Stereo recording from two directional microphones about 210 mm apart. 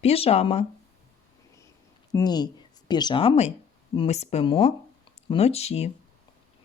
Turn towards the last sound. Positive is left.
turn(degrees=30)  # may be behind; listen again after turning